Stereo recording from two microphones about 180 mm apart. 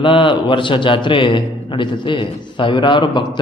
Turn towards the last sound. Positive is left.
turn(degrees=25)  # may be behind; listen again after turning